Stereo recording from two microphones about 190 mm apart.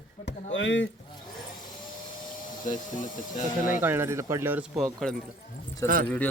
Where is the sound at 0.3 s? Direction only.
75° left (ahead or behind).